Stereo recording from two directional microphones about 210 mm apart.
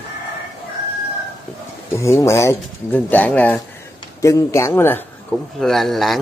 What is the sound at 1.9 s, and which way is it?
Speech, 15° left (ahead or behind).